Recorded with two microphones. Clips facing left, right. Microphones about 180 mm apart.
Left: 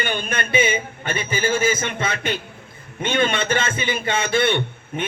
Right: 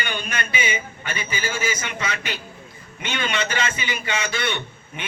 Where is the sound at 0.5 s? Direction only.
50° left (ahead or behind).